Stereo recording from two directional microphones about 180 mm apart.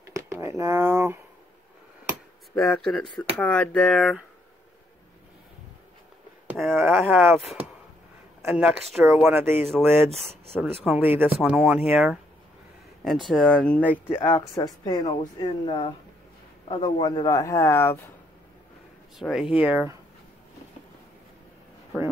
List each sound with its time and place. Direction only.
0.0 s a sound: 15° right (ahead or behind)
2.5 s speech: 5° left (ahead or behind)
6.4 s a sound: 5° right (ahead or behind)
6.9 s speech: 5° right (ahead or behind)
8.5 s speech: 5° right (ahead or behind)
10.5 s speech: centre (ahead or behind)
13.3 s speech: 5° left (ahead or behind)
14.0 s speech: 30° left (ahead or behind)
19.1 s speech: centre (ahead or behind)